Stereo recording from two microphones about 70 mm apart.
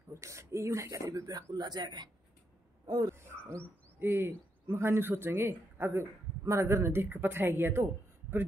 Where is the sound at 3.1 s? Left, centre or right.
Right.